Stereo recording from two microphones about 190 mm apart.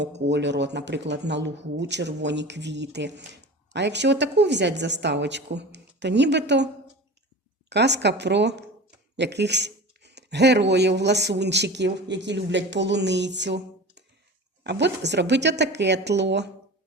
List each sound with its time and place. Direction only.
0.3 s speech: 65° right (ahead or behind)
7.7 s speech: 65° right (ahead or behind)